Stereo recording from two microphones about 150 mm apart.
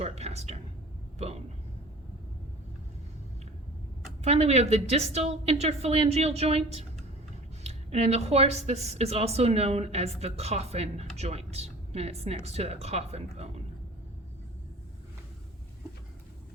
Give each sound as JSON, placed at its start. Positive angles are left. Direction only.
{"t": 0.0, "sound": "speech", "side_deg": -45}
{"t": 4.2, "sound": "a woman's voice", "side_deg": -45}